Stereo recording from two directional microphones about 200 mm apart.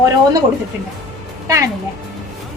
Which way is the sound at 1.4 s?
15° right (ahead or behind).